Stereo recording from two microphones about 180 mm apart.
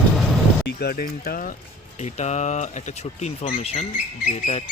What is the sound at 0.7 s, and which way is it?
Speech, 60° left (ahead or behind).